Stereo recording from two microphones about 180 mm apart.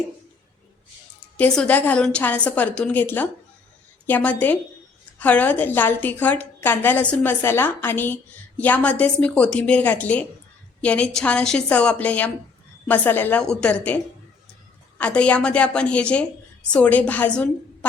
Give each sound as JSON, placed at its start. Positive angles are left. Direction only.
{"t": 1.4, "sound": "a woman's voice", "side_deg": 10}